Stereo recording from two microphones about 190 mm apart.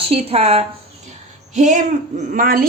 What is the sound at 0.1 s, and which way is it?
Speech, 30° right (ahead or behind).